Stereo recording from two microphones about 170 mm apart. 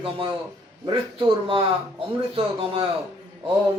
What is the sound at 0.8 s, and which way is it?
A man's voice, 30° right (ahead or behind).